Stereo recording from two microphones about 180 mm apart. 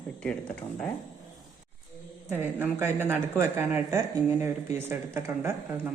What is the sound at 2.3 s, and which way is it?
A man's voice, 10° right (ahead or behind).